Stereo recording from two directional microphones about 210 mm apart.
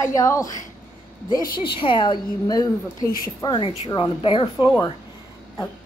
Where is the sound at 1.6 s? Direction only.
25° left (ahead or behind).